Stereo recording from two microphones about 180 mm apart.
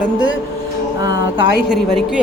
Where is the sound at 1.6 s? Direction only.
Centre (ahead or behind).